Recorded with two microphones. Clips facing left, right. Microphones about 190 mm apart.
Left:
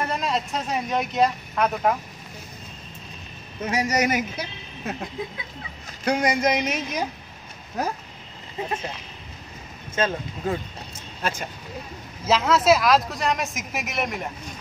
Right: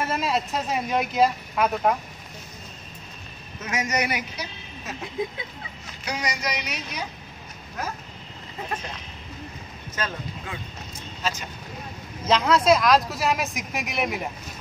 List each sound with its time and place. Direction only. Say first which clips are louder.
0.0 s speech: even; 5° right (ahead or behind)
3.6 s a woman's voice: left 4 dB; 35° left (ahead or behind)
6.0 s speech: left 8 dB; 55° left (ahead or behind)
10.0 s speech: left 7 dB; 25° left (ahead or behind)
10.4 s a woman's voice: left 13 dB; 40° left (ahead or behind)
11.2 s speech: left 2 dB; 55° left (ahead or behind)
12.3 s speech: even; centre (ahead or behind)